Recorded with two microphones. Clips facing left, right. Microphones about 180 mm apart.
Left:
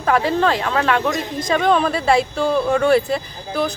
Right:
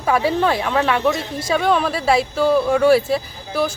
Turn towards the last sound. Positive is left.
turn(degrees=-5)  # may be behind; listen again after turning